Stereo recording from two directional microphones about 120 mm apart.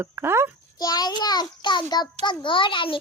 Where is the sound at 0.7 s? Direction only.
35° left (ahead or behind).